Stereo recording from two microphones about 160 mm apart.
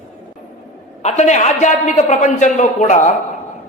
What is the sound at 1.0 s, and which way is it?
A man's voice, 45° left (ahead or behind).